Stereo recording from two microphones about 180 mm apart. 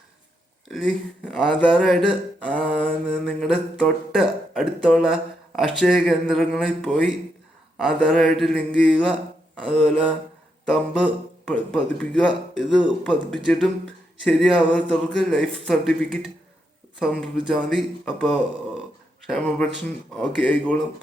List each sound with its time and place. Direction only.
0.7 s speech: centre (ahead or behind)